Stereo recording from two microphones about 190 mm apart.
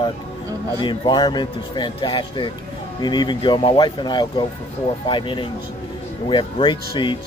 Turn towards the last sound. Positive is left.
turn(degrees=25)  # may be behind; listen again after turning